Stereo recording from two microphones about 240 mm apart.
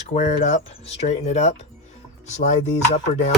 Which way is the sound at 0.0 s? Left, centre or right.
Left.